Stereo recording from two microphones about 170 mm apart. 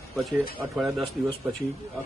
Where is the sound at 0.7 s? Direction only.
Centre (ahead or behind).